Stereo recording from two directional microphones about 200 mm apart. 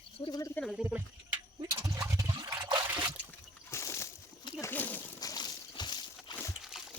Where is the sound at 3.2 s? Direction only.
15° left (ahead or behind).